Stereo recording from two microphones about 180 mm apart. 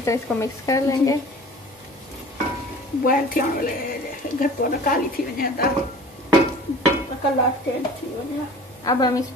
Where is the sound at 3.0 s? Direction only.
50° left (ahead or behind).